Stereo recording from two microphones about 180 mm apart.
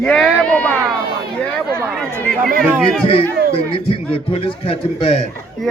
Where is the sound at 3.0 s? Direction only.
30° left (ahead or behind).